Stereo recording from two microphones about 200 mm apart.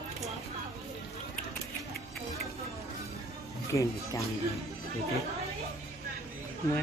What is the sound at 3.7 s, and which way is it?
Speech, 15° left (ahead or behind).